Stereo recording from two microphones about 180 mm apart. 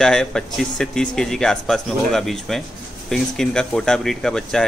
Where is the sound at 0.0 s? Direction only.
5° left (ahead or behind).